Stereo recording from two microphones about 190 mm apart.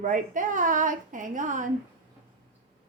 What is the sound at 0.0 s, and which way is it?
A woman's voice, 45° right (ahead or behind).